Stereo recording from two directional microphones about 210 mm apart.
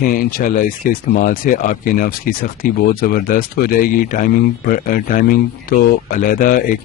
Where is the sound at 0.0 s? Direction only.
45° left (ahead or behind).